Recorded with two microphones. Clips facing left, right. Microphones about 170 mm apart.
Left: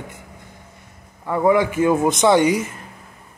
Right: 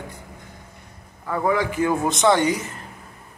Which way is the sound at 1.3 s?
20° left (ahead or behind).